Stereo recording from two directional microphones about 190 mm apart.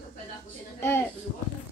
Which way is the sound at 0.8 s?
15° left (ahead or behind).